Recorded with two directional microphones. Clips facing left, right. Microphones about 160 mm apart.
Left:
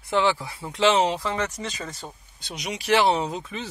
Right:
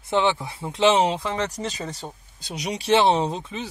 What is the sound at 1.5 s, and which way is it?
Speech, 40° right (ahead or behind).